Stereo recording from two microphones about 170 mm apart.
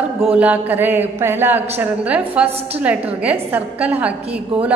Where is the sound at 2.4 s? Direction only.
35° right (ahead or behind).